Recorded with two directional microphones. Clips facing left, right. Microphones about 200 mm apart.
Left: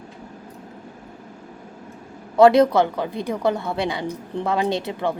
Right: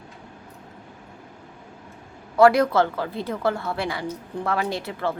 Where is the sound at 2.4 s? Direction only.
20° left (ahead or behind).